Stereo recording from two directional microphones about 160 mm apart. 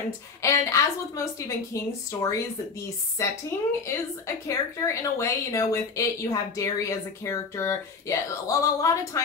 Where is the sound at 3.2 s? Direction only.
15° left (ahead or behind).